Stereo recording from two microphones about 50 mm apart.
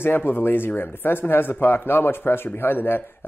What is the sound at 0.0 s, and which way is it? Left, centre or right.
Speech, left.